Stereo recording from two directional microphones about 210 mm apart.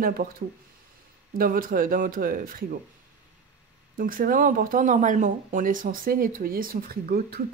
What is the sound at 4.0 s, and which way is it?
Speech, 40° right (ahead or behind).